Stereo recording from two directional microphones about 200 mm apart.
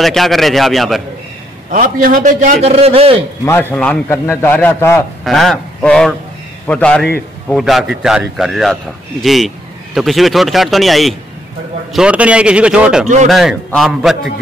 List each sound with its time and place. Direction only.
0.0 s speech: centre (ahead or behind)
1.7 s a man's voice: 45° right (ahead or behind)
3.4 s a man's voice: 10° left (ahead or behind)
5.2 s a man's voice: centre (ahead or behind)